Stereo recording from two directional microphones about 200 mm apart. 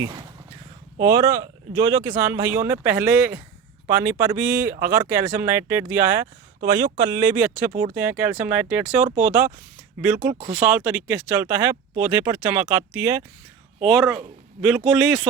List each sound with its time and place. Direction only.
0.0 s speech: 15° right (ahead or behind); by 14.2 s centre (ahead or behind)